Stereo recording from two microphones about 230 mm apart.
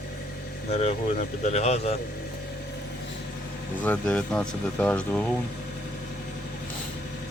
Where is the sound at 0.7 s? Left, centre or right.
Left.